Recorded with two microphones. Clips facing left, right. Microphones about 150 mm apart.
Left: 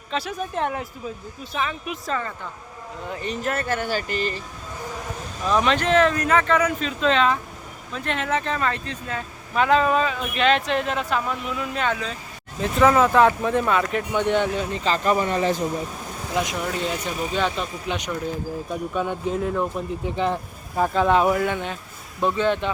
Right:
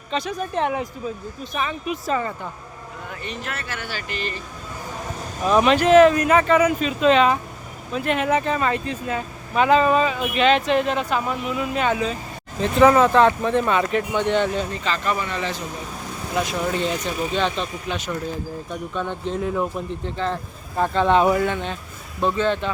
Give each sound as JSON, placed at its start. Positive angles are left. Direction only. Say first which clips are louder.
{"t": 0.1, "sound": "speech", "louder": "right 2 dB", "side_deg": 5}
{"t": 3.1, "sound": "speech", "louder": "left 6 dB", "side_deg": 40}
{"t": 5.5, "sound": "speech", "louder": "right 5 dB", "side_deg": -10}
{"t": 12.6, "sound": "speech", "louder": "right 3 dB", "side_deg": 0}
{"t": 14.2, "sound": "speech", "louder": "left 1 dB", "side_deg": 10}
{"t": 14.8, "sound": "speech", "louder": "left 7 dB", "side_deg": 35}
{"t": 16.3, "sound": "speech", "louder": "right 1 dB", "side_deg": 15}
{"t": 16.7, "sound": "speech", "louder": "right 3 dB", "side_deg": 5}
{"t": 20.1, "sound": "speech", "louder": "left 3 dB", "side_deg": 15}